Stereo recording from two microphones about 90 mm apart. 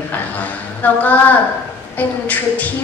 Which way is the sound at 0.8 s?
20° left (ahead or behind).